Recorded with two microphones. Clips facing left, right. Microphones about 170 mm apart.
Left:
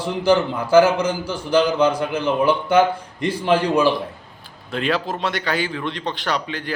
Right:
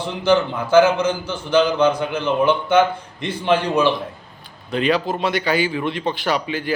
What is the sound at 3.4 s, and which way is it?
A man's voice, 10° left (ahead or behind).